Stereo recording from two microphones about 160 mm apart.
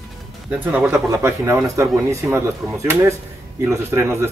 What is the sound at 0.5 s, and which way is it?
A man's voice, 10° right (ahead or behind).